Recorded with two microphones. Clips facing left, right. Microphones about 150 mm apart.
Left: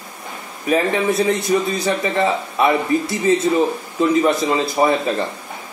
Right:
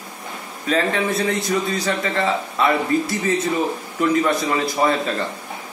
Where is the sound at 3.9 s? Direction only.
20° left (ahead or behind).